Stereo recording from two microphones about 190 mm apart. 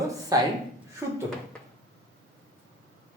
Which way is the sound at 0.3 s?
20° right (ahead or behind).